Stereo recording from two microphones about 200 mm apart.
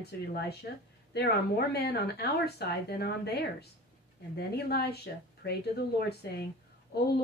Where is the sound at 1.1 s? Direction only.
55° left (ahead or behind).